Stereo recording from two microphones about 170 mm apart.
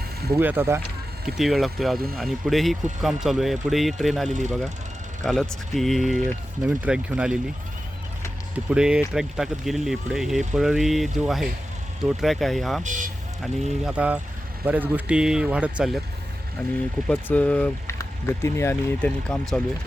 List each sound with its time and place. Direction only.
0.3 s speech: 15° right (ahead or behind)
1.4 s speech: centre (ahead or behind)
4.3 s speech: 45° right (ahead or behind)
5.2 s speech: 5° left (ahead or behind)
8.7 s speech: 5° right (ahead or behind)
12.8 s speech: 50° right (ahead or behind)
13.4 s speech: centre (ahead or behind)
17.1 s speech: 10° left (ahead or behind)